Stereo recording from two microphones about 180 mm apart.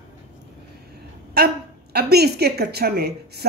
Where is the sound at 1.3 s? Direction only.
60° right (ahead or behind).